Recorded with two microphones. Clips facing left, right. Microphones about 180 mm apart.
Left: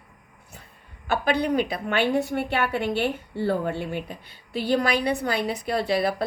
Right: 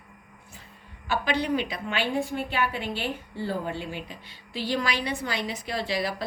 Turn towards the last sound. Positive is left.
turn(degrees=55)  # may be behind; listen again after turning